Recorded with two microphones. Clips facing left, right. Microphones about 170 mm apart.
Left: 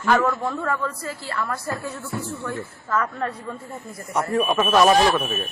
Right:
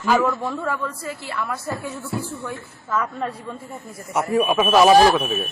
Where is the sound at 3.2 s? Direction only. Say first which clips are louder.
Even; 10° right (ahead or behind).